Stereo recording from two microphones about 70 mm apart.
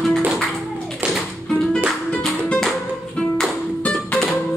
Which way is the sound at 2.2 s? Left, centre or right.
Centre.